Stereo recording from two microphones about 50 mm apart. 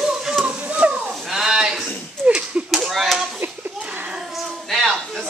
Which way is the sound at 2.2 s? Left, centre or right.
Right.